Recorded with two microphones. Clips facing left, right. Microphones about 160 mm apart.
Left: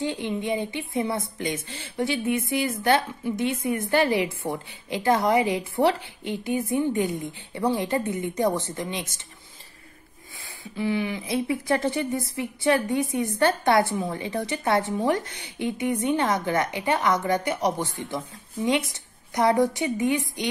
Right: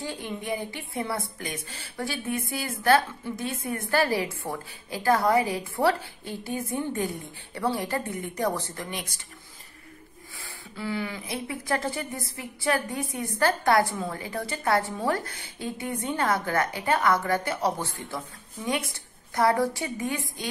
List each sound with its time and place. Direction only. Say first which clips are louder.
0.0 s a woman's voice: left 6 dB; 20° left (ahead or behind)
10.8 s a woman's voice: left 5 dB; 20° left (ahead or behind)
19.3 s a woman's voice: left 2 dB; 20° left (ahead or behind)